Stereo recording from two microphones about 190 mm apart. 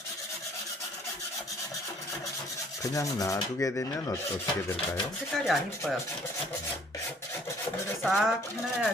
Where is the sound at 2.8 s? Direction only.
15° left (ahead or behind).